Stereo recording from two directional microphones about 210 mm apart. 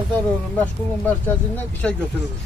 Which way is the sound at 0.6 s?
10° left (ahead or behind).